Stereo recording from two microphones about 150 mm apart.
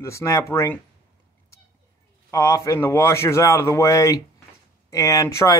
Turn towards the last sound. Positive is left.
turn(degrees=20)  # may be behind; listen again after turning